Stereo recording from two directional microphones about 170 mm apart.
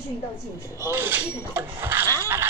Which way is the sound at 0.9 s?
10° right (ahead or behind).